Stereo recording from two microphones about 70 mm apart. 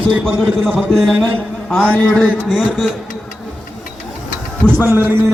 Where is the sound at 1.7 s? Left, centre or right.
Centre.